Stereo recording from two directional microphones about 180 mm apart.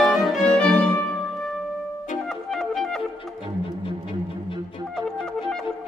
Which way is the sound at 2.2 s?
Centre (ahead or behind).